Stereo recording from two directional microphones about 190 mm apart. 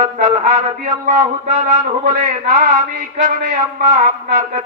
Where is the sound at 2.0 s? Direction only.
40° right (ahead or behind).